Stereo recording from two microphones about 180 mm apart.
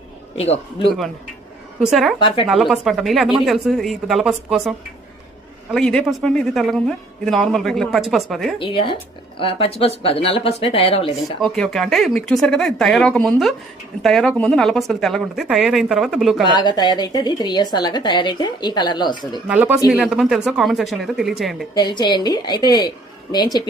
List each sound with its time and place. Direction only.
0.3 s speech: 30° left (ahead or behind)
1.8 s a woman's voice: centre (ahead or behind)
2.1 s a woman's voice: 30° left (ahead or behind)
2.5 s a woman's voice: centre (ahead or behind)
5.7 s a woman's voice: 5° left (ahead or behind)
8.5 s a woman's voice: 30° left (ahead or behind)
11.2 s a woman's voice: centre (ahead or behind)
16.5 s a woman's voice: 25° left (ahead or behind)
19.5 s a woman's voice: 10° right (ahead or behind)
21.8 s a woman's voice: 25° left (ahead or behind)